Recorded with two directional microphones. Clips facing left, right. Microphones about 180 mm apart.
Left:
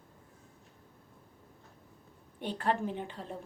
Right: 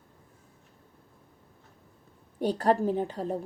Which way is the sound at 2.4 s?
40° right (ahead or behind).